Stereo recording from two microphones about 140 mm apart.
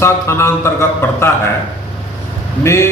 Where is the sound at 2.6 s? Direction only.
20° left (ahead or behind).